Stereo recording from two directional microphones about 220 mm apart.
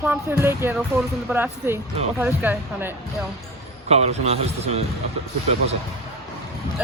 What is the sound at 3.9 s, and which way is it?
Speech, 30° right (ahead or behind).